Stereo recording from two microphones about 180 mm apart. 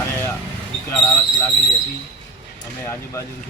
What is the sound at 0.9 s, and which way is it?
Speech, 10° left (ahead or behind).